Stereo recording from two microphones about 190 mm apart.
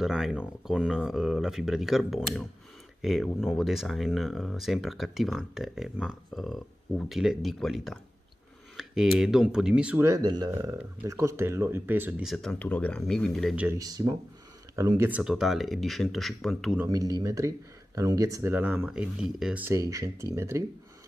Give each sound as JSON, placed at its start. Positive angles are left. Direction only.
{"t": 0.0, "sound": "speech", "side_deg": 0}
{"t": 13.7, "sound": "speech", "side_deg": -20}
{"t": 16.7, "sound": "speech", "side_deg": -15}